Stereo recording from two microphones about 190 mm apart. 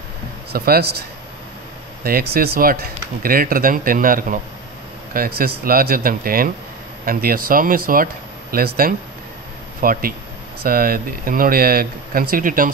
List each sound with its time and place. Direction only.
0.5 s a man's voice: 55° right (ahead or behind)
2.0 s speech: 55° right (ahead or behind)